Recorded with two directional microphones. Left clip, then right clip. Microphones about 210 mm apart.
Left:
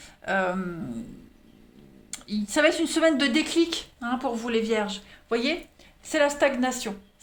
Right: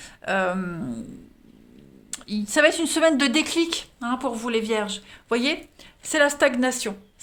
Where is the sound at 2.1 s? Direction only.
30° right (ahead or behind).